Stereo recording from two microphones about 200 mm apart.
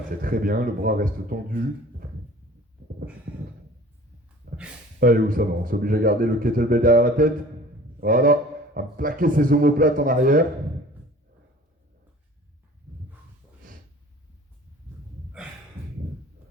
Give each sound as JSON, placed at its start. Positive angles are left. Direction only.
{"t": 0.2, "sound": "a man's voice", "side_deg": -45}
{"t": 4.9, "sound": "a man's voice", "side_deg": -45}